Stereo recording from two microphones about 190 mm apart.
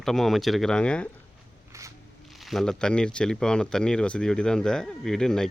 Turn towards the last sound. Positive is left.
turn(degrees=5)  # may be behind; listen again after turning